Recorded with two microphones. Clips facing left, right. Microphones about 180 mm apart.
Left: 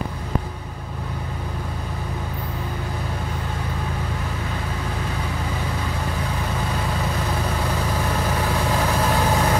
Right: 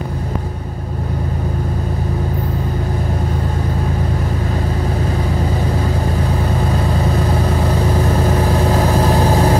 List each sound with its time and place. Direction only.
8.4 s vehicle: 35° right (ahead or behind)